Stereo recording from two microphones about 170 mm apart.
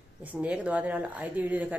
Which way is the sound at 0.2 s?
10° right (ahead or behind).